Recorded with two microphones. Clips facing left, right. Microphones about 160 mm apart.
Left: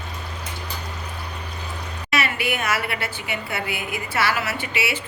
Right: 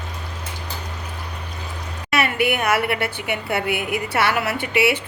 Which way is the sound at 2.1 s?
55° right (ahead or behind).